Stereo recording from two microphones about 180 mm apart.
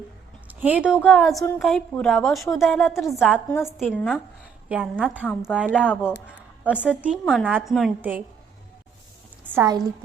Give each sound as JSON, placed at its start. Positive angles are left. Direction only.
{"t": 0.4, "sound": "a sound", "side_deg": -10}
{"t": 1.0, "sound": "a woman's voice", "side_deg": 0}
{"t": 3.8, "sound": "speech", "side_deg": 0}
{"t": 5.2, "sound": "speech", "side_deg": 0}
{"t": 9.6, "sound": "a woman's voice", "side_deg": -20}